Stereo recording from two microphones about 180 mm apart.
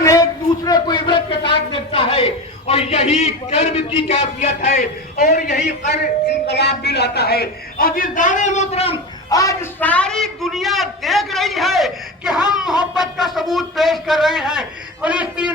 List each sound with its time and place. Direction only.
0.0 s a sound: 20° left (ahead or behind); by 4.9 s 40° left (ahead or behind)
5.1 s a man's voice: 60° left (ahead or behind)
5.5 s speech: 40° left (ahead or behind)
6.5 s a man's voice: 70° left (ahead or behind); by 9.0 s 35° left (ahead or behind)
9.3 s a man's voice: 20° left (ahead or behind); by 15.5 s 5° right (ahead or behind)